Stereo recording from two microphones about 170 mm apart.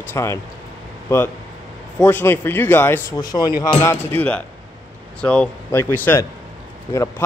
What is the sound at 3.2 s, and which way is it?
Speech, 25° left (ahead or behind).